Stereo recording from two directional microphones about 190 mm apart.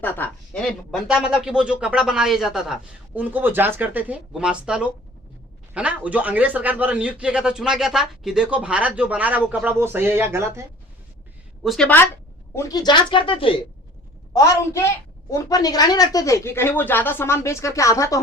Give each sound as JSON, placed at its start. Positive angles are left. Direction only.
{"t": 0.0, "sound": "a man's voice", "side_deg": 10}
{"t": 11.6, "sound": "a woman's voice", "side_deg": 0}
{"t": 12.5, "sound": "speech", "side_deg": 20}
{"t": 14.3, "sound": "a woman's voice", "side_deg": 15}